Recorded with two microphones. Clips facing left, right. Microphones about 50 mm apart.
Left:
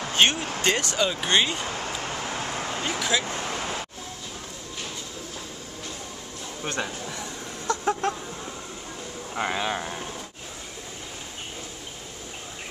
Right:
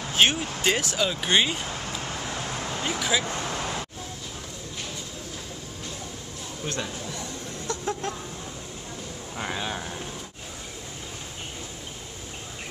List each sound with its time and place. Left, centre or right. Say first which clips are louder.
0.1 s speech: even; centre
2.8 s speech: even; centre
6.6 s speech: left 2 dB; left
7.6 s chicken: left 5 dB; left
9.3 s speech: left 4 dB; left